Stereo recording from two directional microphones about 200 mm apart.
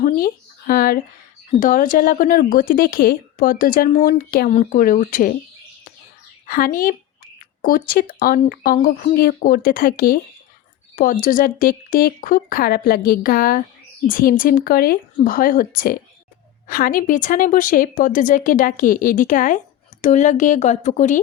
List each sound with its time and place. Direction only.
0.7 s a woman's voice: 45° left (ahead or behind)
6.5 s a woman's voice: 45° left (ahead or behind)